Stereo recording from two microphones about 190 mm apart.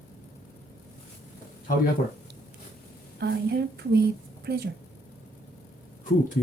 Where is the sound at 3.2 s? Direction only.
60° right (ahead or behind).